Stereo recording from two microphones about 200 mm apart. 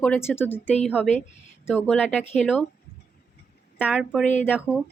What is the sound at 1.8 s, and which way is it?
Speech, centre (ahead or behind).